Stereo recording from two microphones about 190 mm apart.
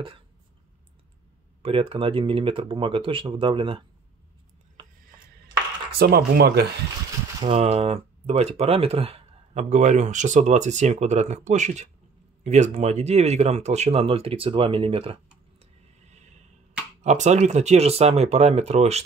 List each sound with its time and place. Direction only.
1.6 s speech: 30° right (ahead or behind)
5.9 s speech: 55° right (ahead or behind)
7.4 s speech: 35° right (ahead or behind)
15.6 s a sound: 35° right (ahead or behind)
17.0 s speech: 35° right (ahead or behind)